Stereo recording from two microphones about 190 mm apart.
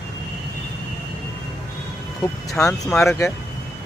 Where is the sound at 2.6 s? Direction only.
15° left (ahead or behind).